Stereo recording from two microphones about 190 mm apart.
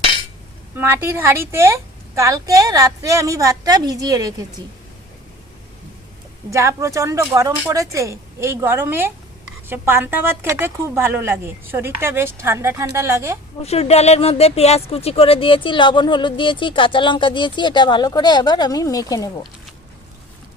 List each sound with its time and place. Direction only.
0.8 s a woman's voice: 10° right (ahead or behind)
6.5 s a woman's voice: 15° right (ahead or behind)
13.6 s speech: 35° left (ahead or behind)